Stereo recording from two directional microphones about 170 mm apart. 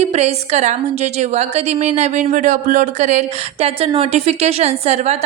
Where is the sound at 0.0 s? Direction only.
40° right (ahead or behind).